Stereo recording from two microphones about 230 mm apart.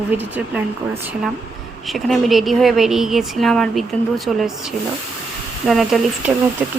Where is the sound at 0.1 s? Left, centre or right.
Centre.